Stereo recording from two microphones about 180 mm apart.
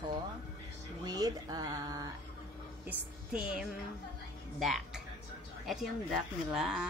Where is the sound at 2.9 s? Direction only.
10° right (ahead or behind).